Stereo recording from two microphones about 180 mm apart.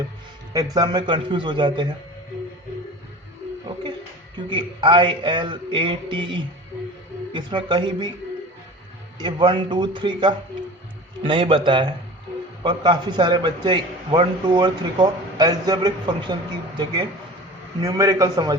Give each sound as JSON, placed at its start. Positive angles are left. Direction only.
{"t": 0.5, "sound": "a man's voice", "side_deg": -20}
{"t": 4.4, "sound": "a man's voice", "side_deg": -25}
{"t": 9.1, "sound": "a man's voice", "side_deg": -25}